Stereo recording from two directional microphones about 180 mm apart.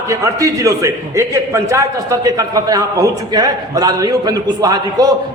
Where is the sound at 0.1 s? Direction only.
20° right (ahead or behind).